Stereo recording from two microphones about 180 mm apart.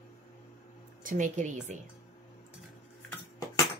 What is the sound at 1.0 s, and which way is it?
Speech, 45° right (ahead or behind).